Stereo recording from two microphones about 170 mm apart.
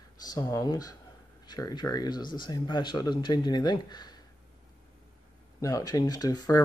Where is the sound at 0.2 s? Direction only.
20° left (ahead or behind).